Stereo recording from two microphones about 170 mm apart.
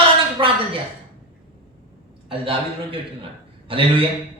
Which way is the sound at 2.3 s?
30° right (ahead or behind).